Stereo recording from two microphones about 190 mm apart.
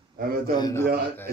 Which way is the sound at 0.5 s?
20° left (ahead or behind).